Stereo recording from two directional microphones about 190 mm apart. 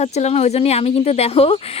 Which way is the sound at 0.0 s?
35° left (ahead or behind).